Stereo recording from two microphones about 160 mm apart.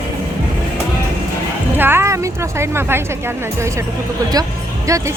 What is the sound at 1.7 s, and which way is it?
Speech, 15° right (ahead or behind).